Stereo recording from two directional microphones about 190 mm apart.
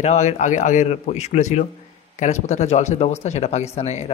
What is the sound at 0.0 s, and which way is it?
Speech, 35° left (ahead or behind).